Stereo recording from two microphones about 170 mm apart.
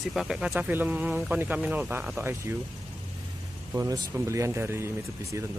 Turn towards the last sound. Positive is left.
turn(degrees=-15)  # may be behind; listen again after turning